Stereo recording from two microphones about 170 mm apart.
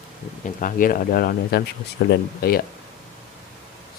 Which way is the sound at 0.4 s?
55° left (ahead or behind).